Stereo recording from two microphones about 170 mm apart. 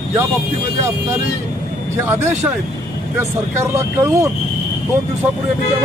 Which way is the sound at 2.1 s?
15° right (ahead or behind).